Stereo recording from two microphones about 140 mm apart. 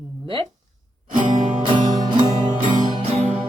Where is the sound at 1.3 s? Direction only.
35° right (ahead or behind).